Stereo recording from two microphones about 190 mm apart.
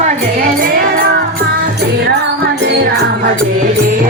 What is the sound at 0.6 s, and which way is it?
Music, 50° right (ahead or behind).